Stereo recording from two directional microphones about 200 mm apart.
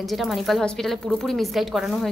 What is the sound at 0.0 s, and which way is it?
A woman's voice, centre (ahead or behind).